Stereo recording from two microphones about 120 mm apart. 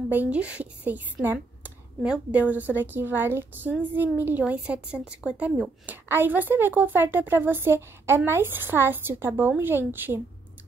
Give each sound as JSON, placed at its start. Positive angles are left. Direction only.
{"t": 0.1, "sound": "a woman's voice", "side_deg": -10}